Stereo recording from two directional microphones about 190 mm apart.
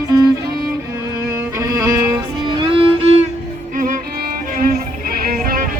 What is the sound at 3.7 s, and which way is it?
Music, 45° right (ahead or behind).